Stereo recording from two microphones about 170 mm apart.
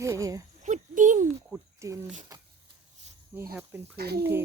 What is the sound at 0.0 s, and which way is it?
Speech, 20° right (ahead or behind).